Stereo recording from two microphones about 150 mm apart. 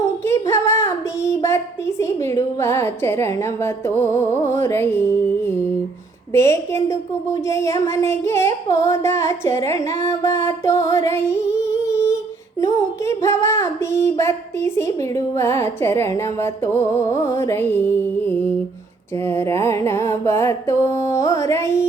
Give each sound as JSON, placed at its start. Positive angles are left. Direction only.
{"t": 0.3, "sound": "a woman's voice", "side_deg": 20}
{"t": 7.4, "sound": "singing", "side_deg": 20}